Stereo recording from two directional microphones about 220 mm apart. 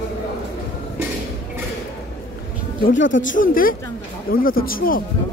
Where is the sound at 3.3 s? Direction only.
40° left (ahead or behind).